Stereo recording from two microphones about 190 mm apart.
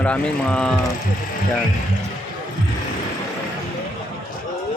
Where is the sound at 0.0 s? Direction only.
5° left (ahead or behind).